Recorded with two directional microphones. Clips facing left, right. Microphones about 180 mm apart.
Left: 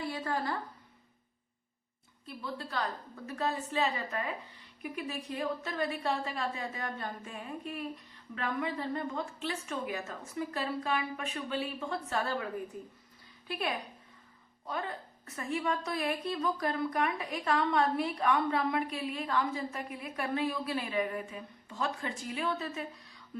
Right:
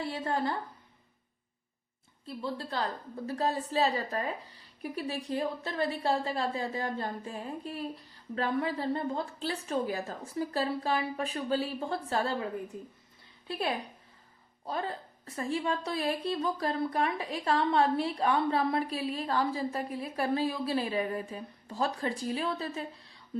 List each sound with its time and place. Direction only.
0.1 s a woman's voice: 25° right (ahead or behind)
2.2 s a woman's voice: 30° right (ahead or behind)
13.5 s a woman's voice: 30° right (ahead or behind)